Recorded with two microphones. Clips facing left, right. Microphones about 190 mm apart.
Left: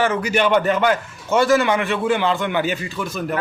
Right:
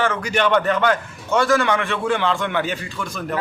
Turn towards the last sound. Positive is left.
turn(degrees=5)  # may be behind; listen again after turning